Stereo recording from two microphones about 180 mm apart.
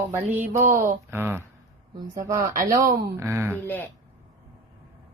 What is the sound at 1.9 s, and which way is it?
Speech, 20° right (ahead or behind).